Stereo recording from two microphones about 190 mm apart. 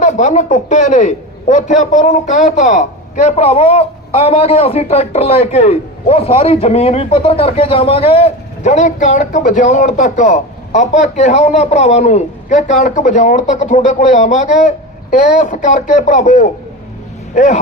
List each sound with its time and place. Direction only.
0.0 s a man's voice: 40° left (ahead or behind)